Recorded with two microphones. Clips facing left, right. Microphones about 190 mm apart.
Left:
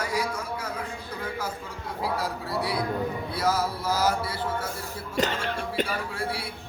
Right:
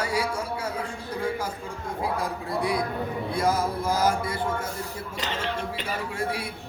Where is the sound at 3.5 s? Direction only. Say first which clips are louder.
Right 2 dB; 5° left (ahead or behind).